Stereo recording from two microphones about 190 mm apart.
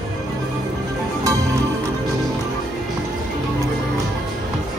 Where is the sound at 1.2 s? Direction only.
15° right (ahead or behind).